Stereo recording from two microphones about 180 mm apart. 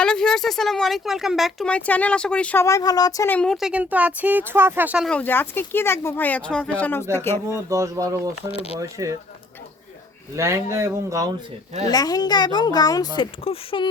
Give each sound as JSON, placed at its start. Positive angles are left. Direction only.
{"t": 0.0, "sound": "speech", "side_deg": 5}
{"t": 3.3, "sound": "speech", "side_deg": 5}
{"t": 5.0, "sound": "speech", "side_deg": 10}
{"t": 7.5, "sound": "speech", "side_deg": -15}
{"t": 10.3, "sound": "speech", "side_deg": -15}
{"t": 11.9, "sound": "a woman's voice", "side_deg": 20}
{"t": 13.1, "sound": "speech", "side_deg": 30}